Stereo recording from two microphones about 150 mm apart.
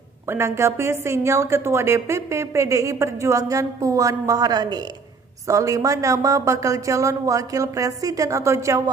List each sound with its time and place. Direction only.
0.3 s a woman's voice: 20° right (ahead or behind)